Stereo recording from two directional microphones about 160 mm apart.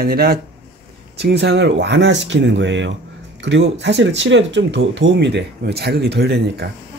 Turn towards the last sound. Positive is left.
turn(degrees=-90)